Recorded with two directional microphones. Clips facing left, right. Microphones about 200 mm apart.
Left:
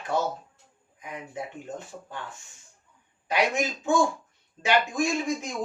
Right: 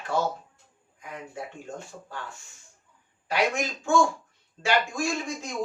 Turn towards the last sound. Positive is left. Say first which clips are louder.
# left 3 dB
turn(degrees=20)  # may be behind; listen again after turning